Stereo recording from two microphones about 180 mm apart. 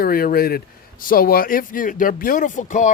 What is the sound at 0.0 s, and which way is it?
Speech, 55° left (ahead or behind).